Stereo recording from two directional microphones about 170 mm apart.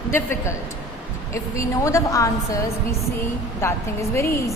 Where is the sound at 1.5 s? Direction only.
20° left (ahead or behind).